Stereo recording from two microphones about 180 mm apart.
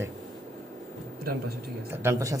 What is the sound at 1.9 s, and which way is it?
Speech, 15° right (ahead or behind).